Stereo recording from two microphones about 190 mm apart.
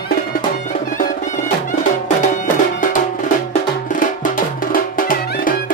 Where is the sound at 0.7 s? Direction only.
40° left (ahead or behind).